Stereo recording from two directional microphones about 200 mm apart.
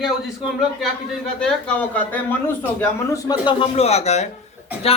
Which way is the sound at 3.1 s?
20° left (ahead or behind).